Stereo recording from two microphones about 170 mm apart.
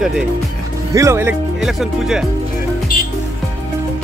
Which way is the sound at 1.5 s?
Centre (ahead or behind).